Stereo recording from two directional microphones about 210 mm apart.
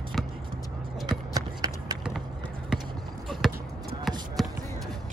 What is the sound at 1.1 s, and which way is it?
Clip-clop, 20° right (ahead or behind).